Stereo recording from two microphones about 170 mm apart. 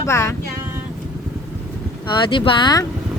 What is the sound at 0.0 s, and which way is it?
Speech, 15° left (ahead or behind).